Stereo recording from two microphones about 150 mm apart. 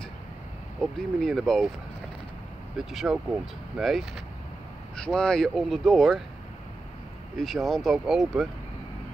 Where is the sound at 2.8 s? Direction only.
5° right (ahead or behind).